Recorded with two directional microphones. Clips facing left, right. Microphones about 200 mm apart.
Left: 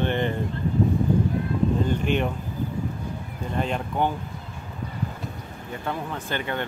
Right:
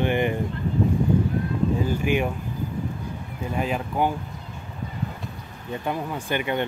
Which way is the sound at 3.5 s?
5° right (ahead or behind).